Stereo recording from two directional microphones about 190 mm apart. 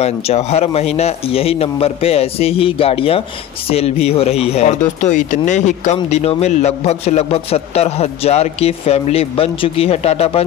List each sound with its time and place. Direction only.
0.0 s speech: 35° left (ahead or behind)